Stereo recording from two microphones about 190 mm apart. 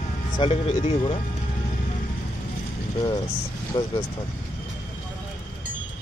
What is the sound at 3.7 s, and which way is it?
Speech, 25° left (ahead or behind).